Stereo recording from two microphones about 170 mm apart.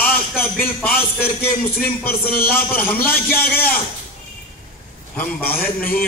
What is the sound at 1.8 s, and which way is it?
Speech, 60° left (ahead or behind).